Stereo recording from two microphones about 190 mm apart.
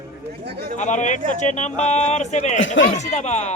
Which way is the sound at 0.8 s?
40° left (ahead or behind).